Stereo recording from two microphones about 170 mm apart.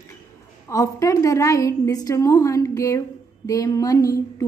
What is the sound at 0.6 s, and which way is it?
A woman's voice, 20° left (ahead or behind).